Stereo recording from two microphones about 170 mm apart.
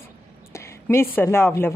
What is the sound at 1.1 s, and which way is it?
Speech, 15° left (ahead or behind).